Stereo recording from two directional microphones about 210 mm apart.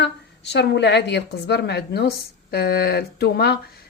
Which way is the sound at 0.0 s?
50° left (ahead or behind).